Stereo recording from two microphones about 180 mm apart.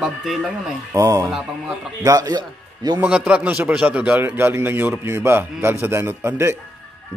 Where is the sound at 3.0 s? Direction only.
5° right (ahead or behind).